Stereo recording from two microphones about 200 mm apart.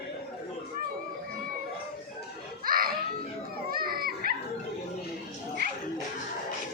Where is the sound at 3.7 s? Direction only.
45° right (ahead or behind).